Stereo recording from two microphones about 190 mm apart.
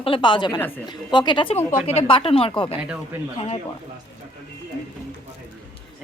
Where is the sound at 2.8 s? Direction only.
5° right (ahead or behind).